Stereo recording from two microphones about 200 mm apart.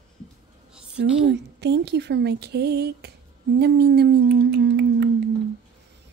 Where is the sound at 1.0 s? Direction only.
60° right (ahead or behind).